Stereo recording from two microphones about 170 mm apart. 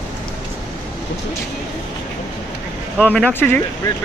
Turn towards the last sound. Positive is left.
turn(degrees=10)  # may be behind; listen again after turning